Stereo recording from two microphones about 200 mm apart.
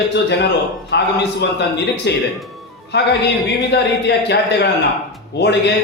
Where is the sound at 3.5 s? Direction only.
60° left (ahead or behind).